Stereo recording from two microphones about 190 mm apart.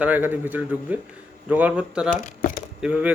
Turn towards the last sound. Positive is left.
turn(degrees=-5)  # may be behind; listen again after turning